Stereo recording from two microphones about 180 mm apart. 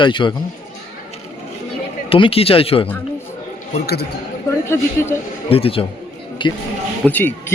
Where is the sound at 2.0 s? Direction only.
30° left (ahead or behind).